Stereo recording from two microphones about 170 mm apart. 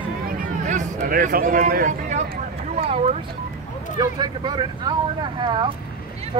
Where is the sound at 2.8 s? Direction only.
35° right (ahead or behind).